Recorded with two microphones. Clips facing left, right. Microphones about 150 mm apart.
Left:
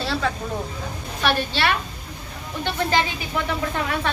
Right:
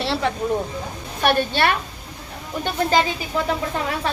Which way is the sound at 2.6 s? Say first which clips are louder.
Right 3 dB; 40° right (ahead or behind).